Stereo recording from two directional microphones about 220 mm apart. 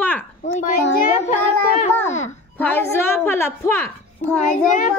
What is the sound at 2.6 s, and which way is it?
A woman's voice, 10° left (ahead or behind).